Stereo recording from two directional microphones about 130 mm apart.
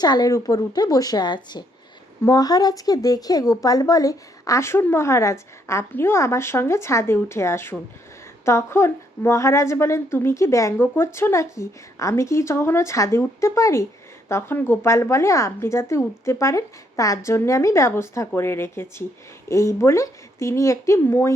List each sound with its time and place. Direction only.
0.0 s a woman's voice: 30° left (ahead or behind)